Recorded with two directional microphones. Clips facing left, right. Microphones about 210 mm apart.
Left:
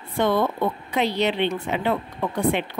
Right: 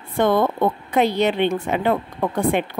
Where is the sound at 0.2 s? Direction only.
50° right (ahead or behind).